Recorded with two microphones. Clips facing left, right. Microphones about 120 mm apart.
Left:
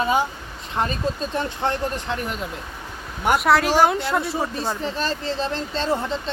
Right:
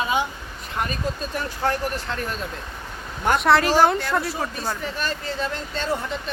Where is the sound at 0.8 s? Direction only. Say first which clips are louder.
Left 3 dB; 25° left (ahead or behind).